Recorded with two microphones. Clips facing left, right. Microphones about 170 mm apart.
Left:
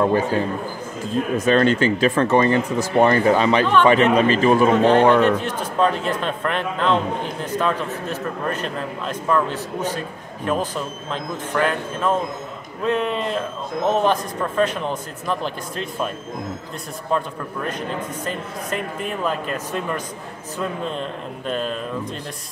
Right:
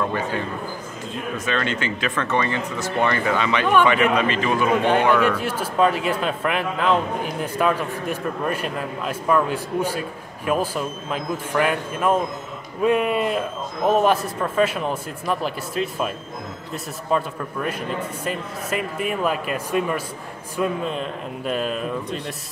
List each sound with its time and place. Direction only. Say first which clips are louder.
0.0 s speech: left 6 dB; 35° left (ahead or behind)
1.4 s speech: left 8 dB; 40° left (ahead or behind)
5.4 s a man's voice: even; 10° right (ahead or behind)
17.1 s a man's voice: right 1 dB; 5° right (ahead or behind)